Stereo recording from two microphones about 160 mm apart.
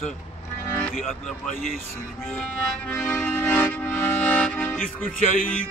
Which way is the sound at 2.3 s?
10° left (ahead or behind).